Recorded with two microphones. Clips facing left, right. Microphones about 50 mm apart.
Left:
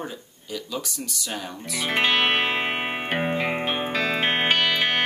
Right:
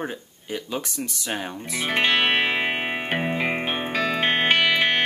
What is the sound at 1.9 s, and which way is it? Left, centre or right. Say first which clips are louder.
Music: right 1 dB; centre.